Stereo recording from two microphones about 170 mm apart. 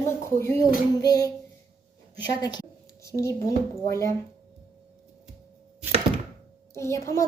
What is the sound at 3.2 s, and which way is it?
Speech, 15° left (ahead or behind).